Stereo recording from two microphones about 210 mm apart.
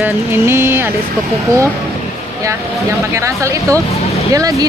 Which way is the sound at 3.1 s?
15° right (ahead or behind).